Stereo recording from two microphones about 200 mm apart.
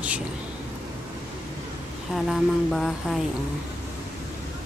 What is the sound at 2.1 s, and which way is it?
Speech, centre (ahead or behind).